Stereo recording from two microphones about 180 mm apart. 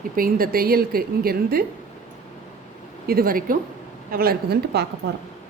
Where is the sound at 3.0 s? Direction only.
55° right (ahead or behind).